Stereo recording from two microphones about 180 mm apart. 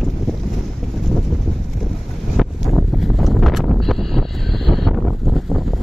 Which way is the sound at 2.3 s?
Centre (ahead or behind).